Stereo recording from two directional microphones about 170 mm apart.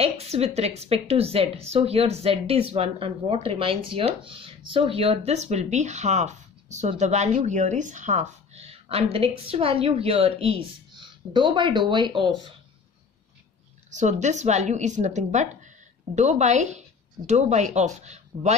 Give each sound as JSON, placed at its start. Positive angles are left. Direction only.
{"t": 0.0, "sound": "a woman's voice", "side_deg": -40}
{"t": 13.8, "sound": "a woman's voice", "side_deg": -45}